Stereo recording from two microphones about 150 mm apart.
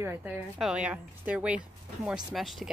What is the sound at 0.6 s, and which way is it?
Speech, 5° right (ahead or behind).